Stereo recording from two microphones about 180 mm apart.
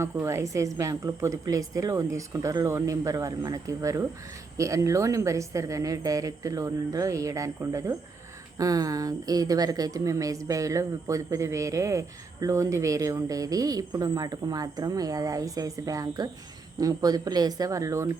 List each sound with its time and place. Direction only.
0.0 s speech: 15° right (ahead or behind)